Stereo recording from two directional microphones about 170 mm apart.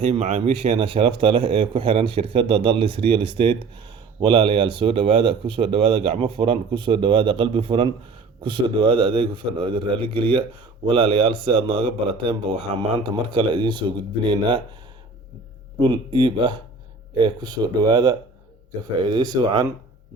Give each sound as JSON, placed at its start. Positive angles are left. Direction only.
{"t": 0.0, "sound": "a man's voice", "side_deg": -35}
{"t": 15.8, "sound": "a man's voice", "side_deg": -30}